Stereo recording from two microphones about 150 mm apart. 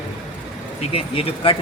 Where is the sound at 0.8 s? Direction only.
40° left (ahead or behind).